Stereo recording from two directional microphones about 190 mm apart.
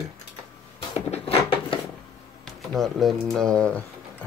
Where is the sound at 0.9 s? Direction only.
30° left (ahead or behind).